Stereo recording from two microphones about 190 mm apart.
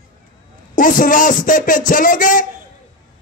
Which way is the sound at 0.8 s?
45° left (ahead or behind).